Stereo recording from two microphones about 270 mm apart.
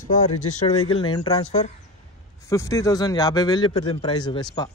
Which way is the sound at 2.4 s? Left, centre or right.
Centre.